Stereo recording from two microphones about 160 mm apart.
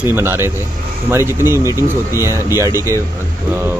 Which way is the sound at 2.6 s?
15° right (ahead or behind).